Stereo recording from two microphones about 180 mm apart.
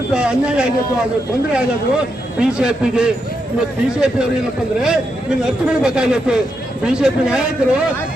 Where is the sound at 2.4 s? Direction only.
5° right (ahead or behind).